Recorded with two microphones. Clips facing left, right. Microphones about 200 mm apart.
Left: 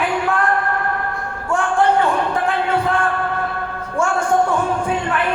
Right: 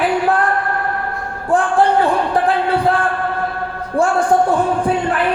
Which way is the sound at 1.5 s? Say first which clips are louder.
Right 3 dB; 35° right (ahead or behind).